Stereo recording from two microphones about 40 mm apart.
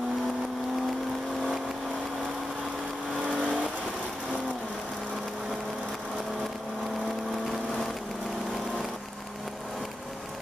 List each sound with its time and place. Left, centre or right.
3.3 s vehicle: right